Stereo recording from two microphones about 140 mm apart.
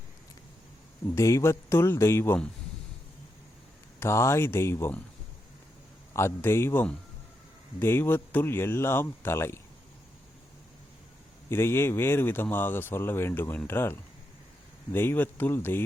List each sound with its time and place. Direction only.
1.1 s speech: 20° left (ahead or behind)
4.0 s speech: 20° left (ahead or behind)
6.1 s speech: 20° left (ahead or behind)
11.4 s speech: 20° left (ahead or behind)